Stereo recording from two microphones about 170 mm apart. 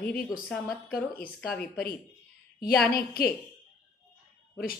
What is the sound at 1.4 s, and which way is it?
Speech, 5° left (ahead or behind).